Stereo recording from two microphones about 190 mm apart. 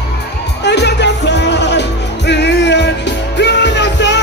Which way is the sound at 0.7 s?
65° left (ahead or behind).